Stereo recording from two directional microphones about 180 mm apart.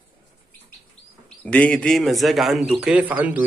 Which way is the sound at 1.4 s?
5° left (ahead or behind).